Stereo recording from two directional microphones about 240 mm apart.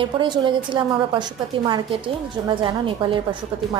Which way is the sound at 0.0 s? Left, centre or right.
Centre.